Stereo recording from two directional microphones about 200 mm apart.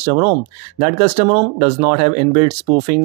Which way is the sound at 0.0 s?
30° right (ahead or behind).